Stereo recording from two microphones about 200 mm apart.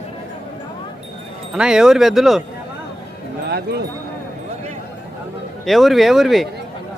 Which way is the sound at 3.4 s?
55° right (ahead or behind).